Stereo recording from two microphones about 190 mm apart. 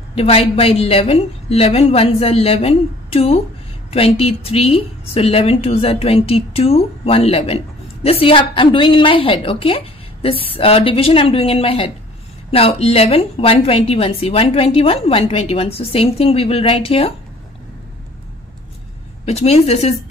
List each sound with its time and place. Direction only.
0.1 s a woman's voice: 30° left (ahead or behind)
19.2 s a woman's voice: 35° left (ahead or behind)